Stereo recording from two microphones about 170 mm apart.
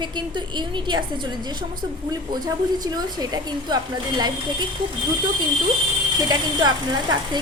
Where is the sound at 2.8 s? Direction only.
25° right (ahead or behind).